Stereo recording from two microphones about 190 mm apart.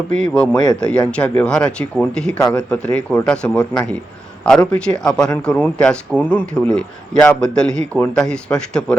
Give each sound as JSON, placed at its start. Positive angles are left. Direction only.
{"t": 0.1, "sound": "a man's voice", "side_deg": 5}
{"t": 0.5, "sound": "speech", "side_deg": 20}
{"t": 0.8, "sound": "a man's voice", "side_deg": 5}